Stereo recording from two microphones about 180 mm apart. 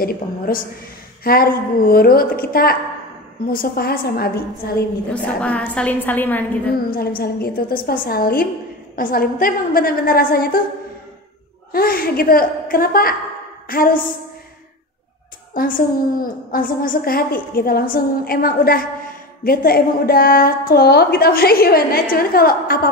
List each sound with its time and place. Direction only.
0.0 s a woman's voice: 55° left (ahead or behind)
5.1 s a woman's voice: 5° left (ahead or behind)
6.9 s a woman's voice: 55° left (ahead or behind)
11.7 s a woman's voice: 55° left (ahead or behind)
15.5 s a woman's voice: 50° left (ahead or behind)